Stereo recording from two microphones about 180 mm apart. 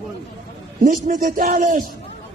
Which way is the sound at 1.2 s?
50° right (ahead or behind).